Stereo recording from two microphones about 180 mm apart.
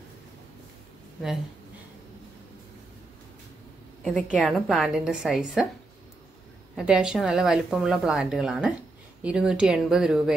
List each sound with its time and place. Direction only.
4.0 s speech: centre (ahead or behind)
6.7 s speech: 5° right (ahead or behind)